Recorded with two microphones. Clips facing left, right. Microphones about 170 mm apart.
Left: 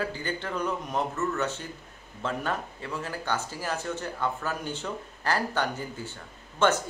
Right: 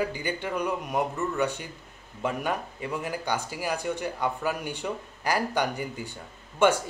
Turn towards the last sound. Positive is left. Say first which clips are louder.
# right 2 dB
turn(degrees=-10)  # may be behind; listen again after turning